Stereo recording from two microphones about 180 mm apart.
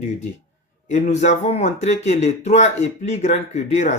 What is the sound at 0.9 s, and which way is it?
Speech, 40° left (ahead or behind).